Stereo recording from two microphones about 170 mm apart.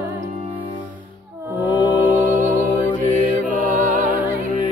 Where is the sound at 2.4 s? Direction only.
50° right (ahead or behind).